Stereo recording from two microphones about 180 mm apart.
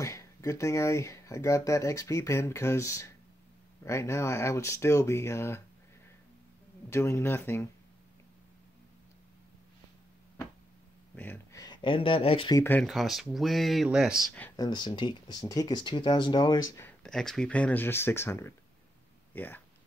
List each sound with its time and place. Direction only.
0.0 s speech: 15° left (ahead or behind)
6.9 s speech: 15° left (ahead or behind)
11.1 s a sound: 10° left (ahead or behind)
11.6 s speech: 25° left (ahead or behind)
12.5 s speech: 10° left (ahead or behind)
12.8 s speech: centre (ahead or behind)
14.6 s speech: 25° left (ahead or behind)
16.7 s speech: 10° left (ahead or behind)